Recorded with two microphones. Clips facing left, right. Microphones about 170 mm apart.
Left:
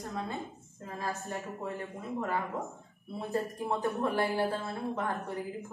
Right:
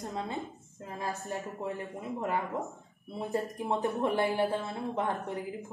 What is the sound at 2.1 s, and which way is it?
Speech, 20° right (ahead or behind).